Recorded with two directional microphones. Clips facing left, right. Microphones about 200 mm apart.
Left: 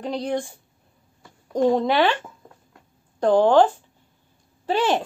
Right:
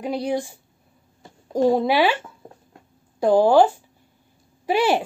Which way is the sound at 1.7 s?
10° right (ahead or behind).